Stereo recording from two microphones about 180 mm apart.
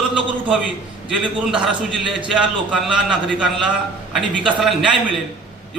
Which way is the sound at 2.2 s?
5° right (ahead or behind).